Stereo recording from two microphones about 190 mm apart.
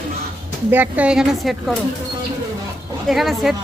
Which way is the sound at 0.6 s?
10° right (ahead or behind).